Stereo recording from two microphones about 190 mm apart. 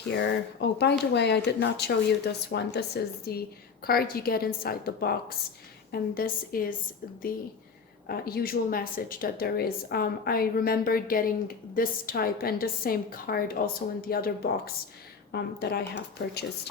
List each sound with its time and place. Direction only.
0.1 s a woman's voice: 60° left (ahead or behind)
8.0 s a woman's voice: 55° left (ahead or behind)